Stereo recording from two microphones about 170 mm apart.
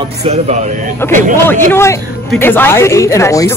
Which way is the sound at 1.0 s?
10° left (ahead or behind).